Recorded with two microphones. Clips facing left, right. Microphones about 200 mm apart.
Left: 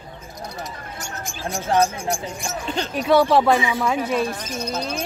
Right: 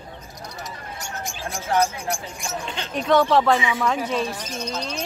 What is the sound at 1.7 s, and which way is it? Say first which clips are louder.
Speech: left 2 dB; 25° left (ahead or behind).